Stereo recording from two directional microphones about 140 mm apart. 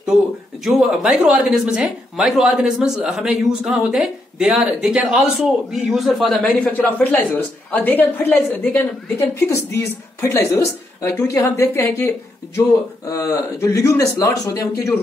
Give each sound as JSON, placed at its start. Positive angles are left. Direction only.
{"t": 0.7, "sound": "a man's voice", "side_deg": -5}